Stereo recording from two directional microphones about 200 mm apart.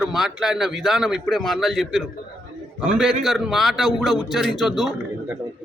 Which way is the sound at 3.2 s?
Centre (ahead or behind).